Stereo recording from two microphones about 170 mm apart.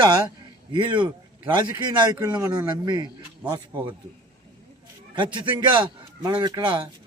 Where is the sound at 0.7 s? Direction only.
25° right (ahead or behind).